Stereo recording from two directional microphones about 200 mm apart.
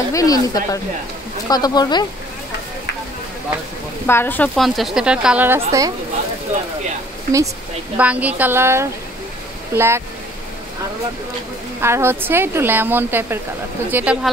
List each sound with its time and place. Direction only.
0.1 s speech: 15° left (ahead or behind)
4.1 s a woman's voice: 10° left (ahead or behind); by 5.9 s 15° right (ahead or behind)
8.0 s speech: 5° right (ahead or behind)
11.8 s speech: 10° right (ahead or behind)